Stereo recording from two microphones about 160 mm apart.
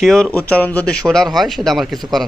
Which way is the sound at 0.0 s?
5° left (ahead or behind).